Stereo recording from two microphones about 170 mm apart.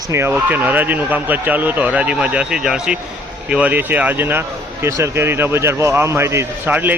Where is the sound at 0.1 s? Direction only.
15° right (ahead or behind).